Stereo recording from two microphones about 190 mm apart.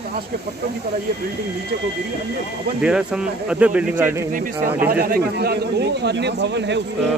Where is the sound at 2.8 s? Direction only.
5° right (ahead or behind).